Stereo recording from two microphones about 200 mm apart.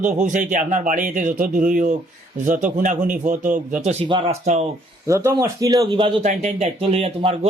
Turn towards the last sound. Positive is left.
turn(degrees=-30)  # may be behind; listen again after turning